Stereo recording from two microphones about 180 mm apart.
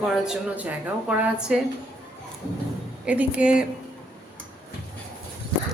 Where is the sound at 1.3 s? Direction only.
5° right (ahead or behind).